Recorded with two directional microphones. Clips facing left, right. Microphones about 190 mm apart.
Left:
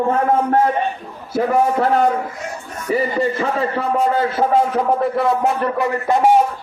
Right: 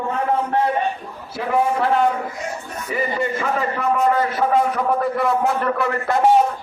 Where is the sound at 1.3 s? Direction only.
40° left (ahead or behind); by 6.3 s 15° left (ahead or behind).